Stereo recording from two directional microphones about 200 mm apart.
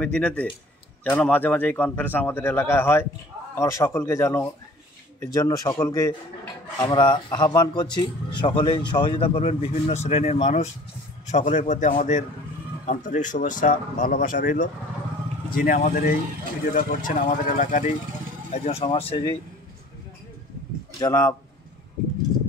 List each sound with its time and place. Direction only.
0.0 s a man's voice: 5° left (ahead or behind); by 19.3 s 25° left (ahead or behind)
21.0 s a man's voice: 15° left (ahead or behind)